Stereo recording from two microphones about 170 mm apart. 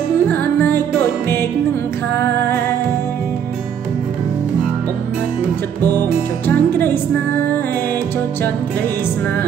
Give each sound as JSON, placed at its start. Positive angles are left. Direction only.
{"t": 0.3, "sound": "music", "side_deg": 10}
{"t": 5.8, "sound": "music", "side_deg": -20}
{"t": 6.4, "sound": "music", "side_deg": 10}